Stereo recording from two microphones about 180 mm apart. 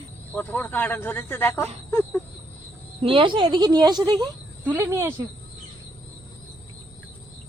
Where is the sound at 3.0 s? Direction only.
30° right (ahead or behind).